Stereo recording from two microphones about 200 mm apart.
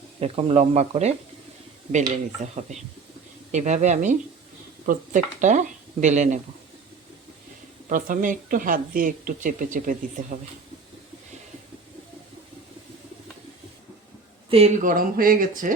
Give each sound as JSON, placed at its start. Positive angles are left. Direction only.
{"t": 0.2, "sound": "speech", "side_deg": -30}
{"t": 7.9, "sound": "speech", "side_deg": -40}
{"t": 14.8, "sound": "speech", "side_deg": -45}